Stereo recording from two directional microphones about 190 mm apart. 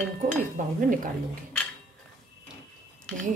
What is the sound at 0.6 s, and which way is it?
Cutlery, 40° right (ahead or behind).